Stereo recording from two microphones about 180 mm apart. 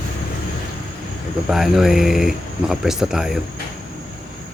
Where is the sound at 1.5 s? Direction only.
Centre (ahead or behind).